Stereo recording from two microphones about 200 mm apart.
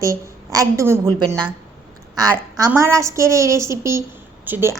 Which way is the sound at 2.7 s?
15° right (ahead or behind).